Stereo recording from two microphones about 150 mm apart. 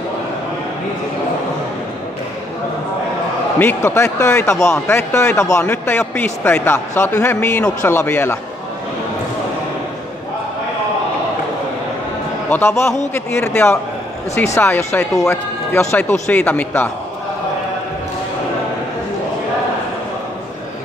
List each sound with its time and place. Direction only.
3.5 s a man's voice: 15° left (ahead or behind)
12.4 s a man's voice: 15° left (ahead or behind)